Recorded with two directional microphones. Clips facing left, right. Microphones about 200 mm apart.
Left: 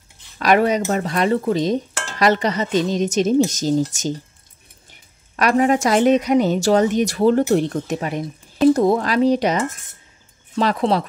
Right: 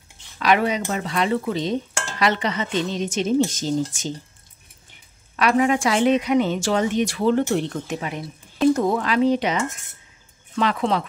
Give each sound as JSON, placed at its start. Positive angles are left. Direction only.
{"t": 0.4, "sound": "speech", "side_deg": 45}
{"t": 5.3, "sound": "a woman's voice", "side_deg": 40}